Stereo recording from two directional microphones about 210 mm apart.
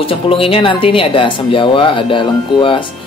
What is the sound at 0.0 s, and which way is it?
Music, 25° left (ahead or behind).